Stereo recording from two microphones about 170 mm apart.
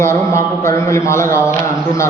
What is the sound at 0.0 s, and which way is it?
A woman's voice, 15° left (ahead or behind).